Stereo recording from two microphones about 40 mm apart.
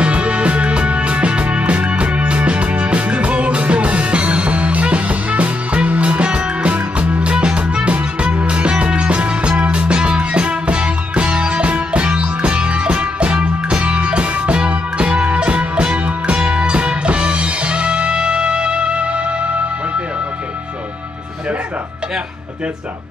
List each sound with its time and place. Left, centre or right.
0.0 s music: right